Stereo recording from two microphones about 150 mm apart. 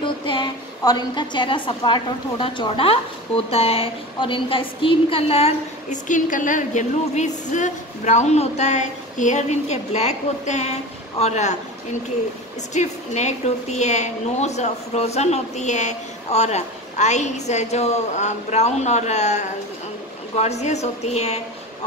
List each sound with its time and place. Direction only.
0.0 s a woman's voice: 30° left (ahead or behind); by 11.5 s 50° left (ahead or behind)
12.7 s a woman's voice: 50° left (ahead or behind)